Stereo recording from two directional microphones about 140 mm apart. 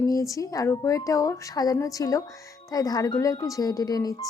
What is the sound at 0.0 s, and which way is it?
A woman's voice, 25° left (ahead or behind).